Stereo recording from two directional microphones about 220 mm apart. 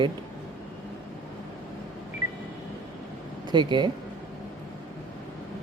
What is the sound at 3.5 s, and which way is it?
Speech, 20° right (ahead or behind).